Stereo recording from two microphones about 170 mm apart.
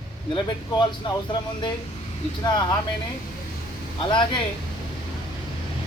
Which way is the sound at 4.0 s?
30° left (ahead or behind).